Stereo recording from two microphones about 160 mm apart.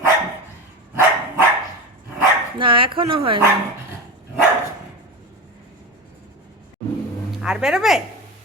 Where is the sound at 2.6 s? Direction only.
35° right (ahead or behind).